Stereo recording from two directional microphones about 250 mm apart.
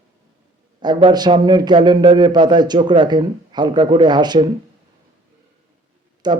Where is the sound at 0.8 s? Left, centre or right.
Centre.